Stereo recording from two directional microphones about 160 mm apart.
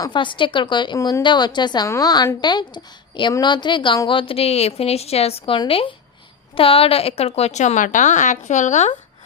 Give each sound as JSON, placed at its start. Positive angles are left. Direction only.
{"t": 0.0, "sound": "a woman's voice", "side_deg": 30}